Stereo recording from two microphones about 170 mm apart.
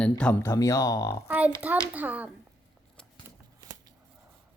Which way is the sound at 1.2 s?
10° right (ahead or behind).